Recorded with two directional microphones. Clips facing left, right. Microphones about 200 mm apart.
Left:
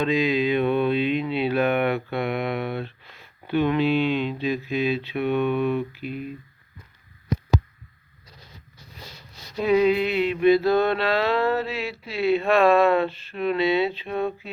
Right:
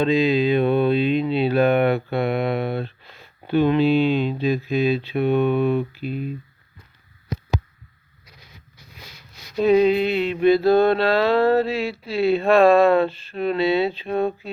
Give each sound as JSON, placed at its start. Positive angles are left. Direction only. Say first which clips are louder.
{"t": 0.0, "sound": "speech", "louder": "right 4 dB", "side_deg": -30}
{"t": 9.6, "sound": "speech", "louder": "right 3 dB", "side_deg": -30}